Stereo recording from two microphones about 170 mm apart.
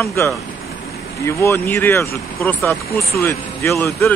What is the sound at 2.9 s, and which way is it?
Speech, 65° left (ahead or behind).